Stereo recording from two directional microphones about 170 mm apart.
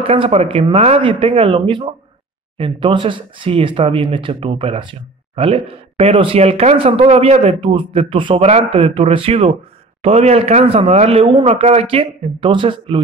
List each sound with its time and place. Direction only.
0.0 s speech: 35° right (ahead or behind)